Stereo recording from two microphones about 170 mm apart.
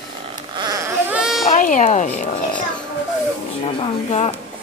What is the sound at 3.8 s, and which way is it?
Speech, 40° left (ahead or behind).